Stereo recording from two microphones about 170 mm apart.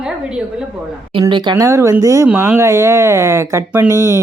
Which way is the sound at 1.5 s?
15° right (ahead or behind).